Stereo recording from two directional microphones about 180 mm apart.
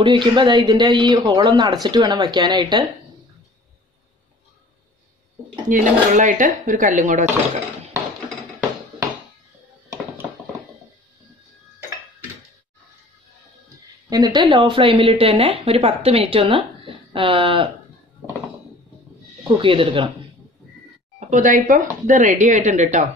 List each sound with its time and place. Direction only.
0.0 s speech: 25° right (ahead or behind)
5.7 s speech: 45° right (ahead or behind)
14.0 s speech: 20° right (ahead or behind)
19.4 s speech: 30° right (ahead or behind)
21.2 s speech: 45° right (ahead or behind)